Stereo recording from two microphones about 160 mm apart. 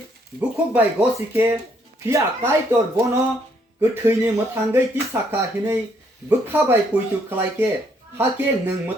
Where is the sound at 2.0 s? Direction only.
15° right (ahead or behind).